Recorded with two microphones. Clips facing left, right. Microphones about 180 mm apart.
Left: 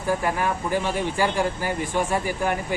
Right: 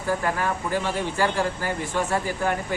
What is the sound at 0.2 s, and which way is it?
Speech, 10° left (ahead or behind).